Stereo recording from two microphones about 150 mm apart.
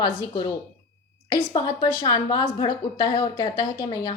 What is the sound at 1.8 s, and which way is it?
A woman's voice, 25° left (ahead or behind).